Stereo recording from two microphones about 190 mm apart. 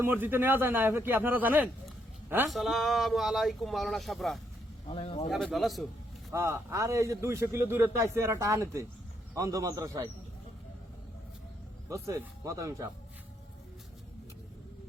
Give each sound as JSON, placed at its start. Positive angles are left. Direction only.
{"t": 0.0, "sound": "a man's voice", "side_deg": -10}
{"t": 4.9, "sound": "speech", "side_deg": 30}
{"t": 5.3, "sound": "speech", "side_deg": 0}
{"t": 6.3, "sound": "a man's voice", "side_deg": -15}
{"t": 11.9, "sound": "a man's voice", "side_deg": -15}